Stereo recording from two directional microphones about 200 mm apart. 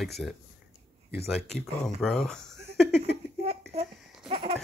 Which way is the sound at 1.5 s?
5° left (ahead or behind).